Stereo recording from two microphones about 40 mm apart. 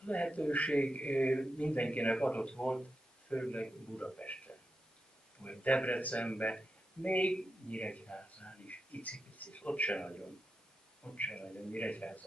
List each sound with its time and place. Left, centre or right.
0.0 s a man's voice: left
4.2 s a sound: left
5.4 s a man's voice: left